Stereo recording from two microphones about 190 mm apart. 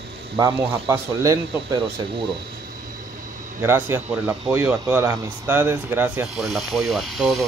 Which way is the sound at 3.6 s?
15° right (ahead or behind).